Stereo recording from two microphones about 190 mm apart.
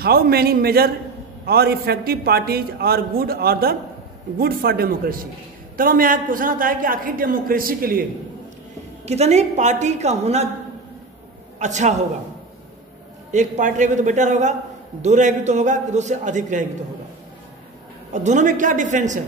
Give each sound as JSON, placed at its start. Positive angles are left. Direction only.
{"t": 0.0, "sound": "a man's voice", "side_deg": -55}
{"t": 9.0, "sound": "a man's voice", "side_deg": -35}
{"t": 11.6, "sound": "a man's voice", "side_deg": -40}
{"t": 13.3, "sound": "a man's voice", "side_deg": -40}
{"t": 18.1, "sound": "a man's voice", "side_deg": -40}